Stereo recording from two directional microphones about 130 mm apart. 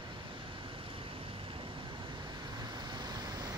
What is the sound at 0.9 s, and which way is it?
Vehicle, 45° right (ahead or behind).